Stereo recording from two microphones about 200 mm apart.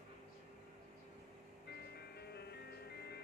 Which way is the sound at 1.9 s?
55° left (ahead or behind).